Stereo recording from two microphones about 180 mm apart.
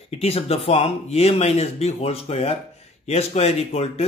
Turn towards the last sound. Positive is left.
turn(degrees=35)  # may be behind; listen again after turning